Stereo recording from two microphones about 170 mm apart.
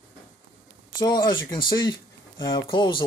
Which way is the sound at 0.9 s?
25° left (ahead or behind).